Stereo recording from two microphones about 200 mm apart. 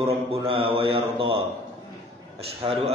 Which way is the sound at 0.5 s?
25° right (ahead or behind).